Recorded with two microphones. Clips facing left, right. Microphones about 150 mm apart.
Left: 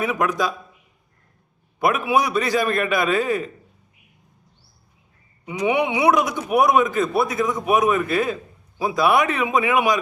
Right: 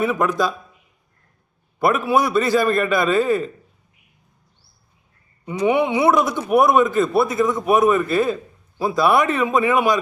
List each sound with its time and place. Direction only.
0.0 s a man's voice: centre (ahead or behind)
1.8 s a man's voice: 10° left (ahead or behind)
5.5 s a man's voice: 15° left (ahead or behind)